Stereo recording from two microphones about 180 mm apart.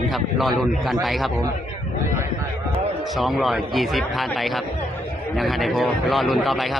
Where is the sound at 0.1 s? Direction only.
Centre (ahead or behind).